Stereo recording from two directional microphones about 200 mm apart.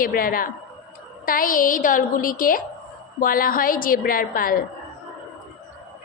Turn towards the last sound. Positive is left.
turn(degrees=45)  # may be behind; listen again after turning